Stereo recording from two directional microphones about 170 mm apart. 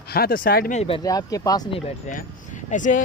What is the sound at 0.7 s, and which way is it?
Speech, 35° left (ahead or behind).